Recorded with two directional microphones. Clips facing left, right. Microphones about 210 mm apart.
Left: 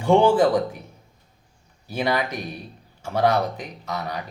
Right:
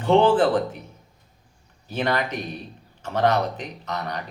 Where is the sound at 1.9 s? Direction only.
10° left (ahead or behind).